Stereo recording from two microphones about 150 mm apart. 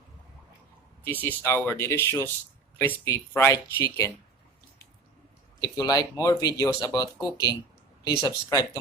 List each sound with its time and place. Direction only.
1.0 s speech: 10° left (ahead or behind)
5.5 s speech: 25° left (ahead or behind)